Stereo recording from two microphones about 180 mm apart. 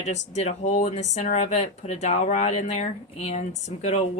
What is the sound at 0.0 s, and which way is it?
A woman's voice, 40° left (ahead or behind).